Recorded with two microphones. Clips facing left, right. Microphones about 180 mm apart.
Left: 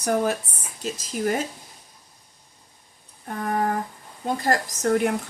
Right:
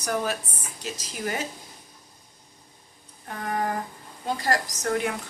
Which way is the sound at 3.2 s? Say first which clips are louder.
Left 4 dB; 45° left (ahead or behind).